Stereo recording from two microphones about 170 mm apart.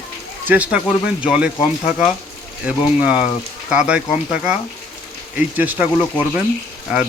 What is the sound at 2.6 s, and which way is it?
Speech, 5° right (ahead or behind).